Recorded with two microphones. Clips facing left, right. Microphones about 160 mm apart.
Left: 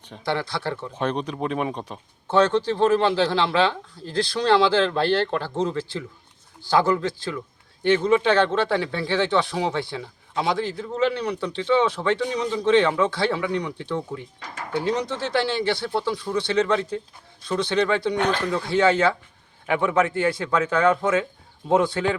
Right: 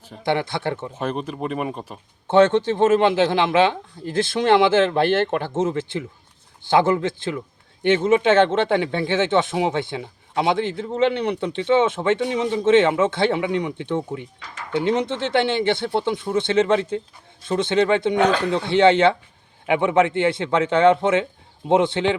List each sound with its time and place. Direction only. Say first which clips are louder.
0.3 s speech: right 4 dB; 20° right (ahead or behind)
0.9 s speech: even; 5° right (ahead or behind)
2.2 s speech: right 4 dB; 25° right (ahead or behind)